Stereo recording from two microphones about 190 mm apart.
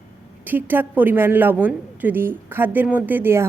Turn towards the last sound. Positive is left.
turn(degrees=-10)  # may be behind; listen again after turning